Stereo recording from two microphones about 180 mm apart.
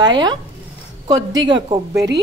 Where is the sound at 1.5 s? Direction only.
25° right (ahead or behind).